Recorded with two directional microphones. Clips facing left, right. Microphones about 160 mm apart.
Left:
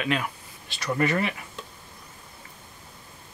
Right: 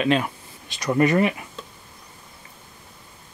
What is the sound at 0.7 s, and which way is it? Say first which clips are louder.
Speech: right 6 dB; 20° right (ahead or behind).